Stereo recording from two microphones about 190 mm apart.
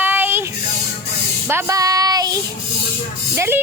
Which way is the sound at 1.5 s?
15° right (ahead or behind).